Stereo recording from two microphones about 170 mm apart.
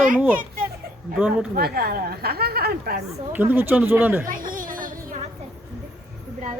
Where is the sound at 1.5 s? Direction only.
65° right (ahead or behind).